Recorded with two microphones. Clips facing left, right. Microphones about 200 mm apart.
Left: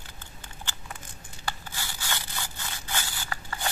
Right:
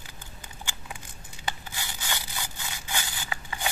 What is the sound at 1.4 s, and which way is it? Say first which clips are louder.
Crushing: even; 15° right (ahead or behind).